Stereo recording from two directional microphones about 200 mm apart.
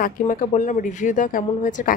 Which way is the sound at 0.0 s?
40° left (ahead or behind).